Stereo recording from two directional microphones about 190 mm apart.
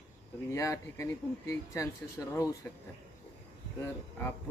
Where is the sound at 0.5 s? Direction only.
15° left (ahead or behind).